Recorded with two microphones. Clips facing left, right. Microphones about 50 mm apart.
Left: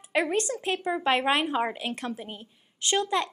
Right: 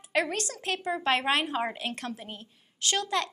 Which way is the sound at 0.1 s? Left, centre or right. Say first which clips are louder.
Left 3 dB; left.